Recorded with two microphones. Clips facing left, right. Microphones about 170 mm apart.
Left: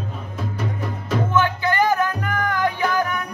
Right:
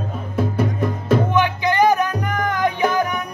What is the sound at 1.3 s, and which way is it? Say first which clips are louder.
Music: right 2 dB; 15° right (ahead or behind).